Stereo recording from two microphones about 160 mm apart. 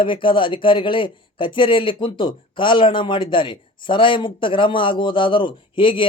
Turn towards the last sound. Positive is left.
turn(degrees=30)  # may be behind; listen again after turning